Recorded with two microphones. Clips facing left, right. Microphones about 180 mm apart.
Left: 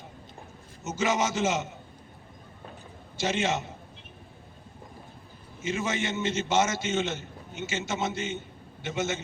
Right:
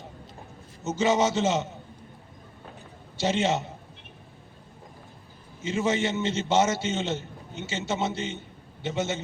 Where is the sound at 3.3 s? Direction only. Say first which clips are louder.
Right 3 dB; 35° right (ahead or behind).